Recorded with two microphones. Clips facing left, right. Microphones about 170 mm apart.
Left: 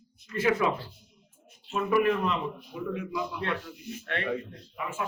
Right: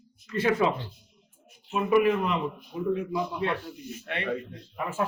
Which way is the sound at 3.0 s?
35° right (ahead or behind).